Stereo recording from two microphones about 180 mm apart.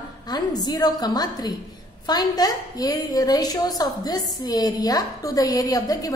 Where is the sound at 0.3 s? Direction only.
20° left (ahead or behind).